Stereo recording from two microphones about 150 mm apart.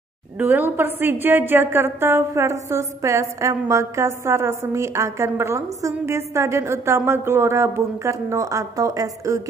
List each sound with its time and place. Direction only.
0.4 s a woman's voice: 10° right (ahead or behind)